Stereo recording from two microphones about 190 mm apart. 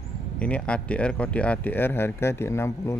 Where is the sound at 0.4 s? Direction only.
5° left (ahead or behind).